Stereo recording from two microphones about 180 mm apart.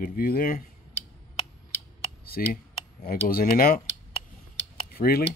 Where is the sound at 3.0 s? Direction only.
55° left (ahead or behind).